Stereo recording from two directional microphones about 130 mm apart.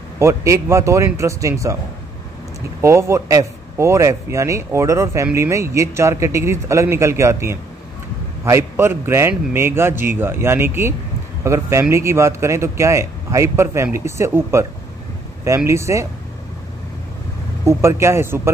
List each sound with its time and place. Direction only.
0.2 s a man's voice: 20° right (ahead or behind)
2.8 s a man's voice: 20° right (ahead or behind)
17.6 s a man's voice: 20° right (ahead or behind)